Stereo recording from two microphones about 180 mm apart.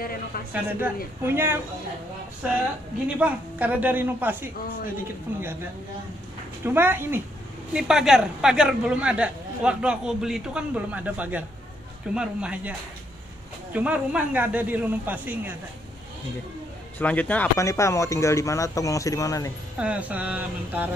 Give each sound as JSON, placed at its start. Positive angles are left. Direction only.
{"t": 0.5, "sound": "speech", "side_deg": -10}
{"t": 3.2, "sound": "speech", "side_deg": -10}
{"t": 6.6, "sound": "a man's voice", "side_deg": -10}
{"t": 13.7, "sound": "speech", "side_deg": -5}
{"t": 17.0, "sound": "speech", "side_deg": 10}
{"t": 19.8, "sound": "speech", "side_deg": -5}